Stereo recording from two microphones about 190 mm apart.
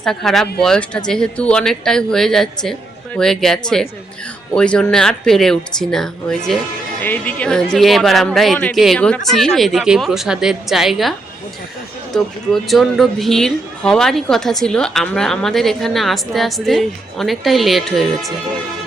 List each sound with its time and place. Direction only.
0.0 s a woman's voice: centre (ahead or behind)
12.1 s a woman's voice: 5° left (ahead or behind)